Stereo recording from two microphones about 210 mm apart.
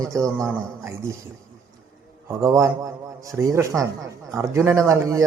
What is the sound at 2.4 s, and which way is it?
A man's voice, 15° right (ahead or behind).